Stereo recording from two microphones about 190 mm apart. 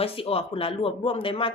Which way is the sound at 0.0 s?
30° left (ahead or behind).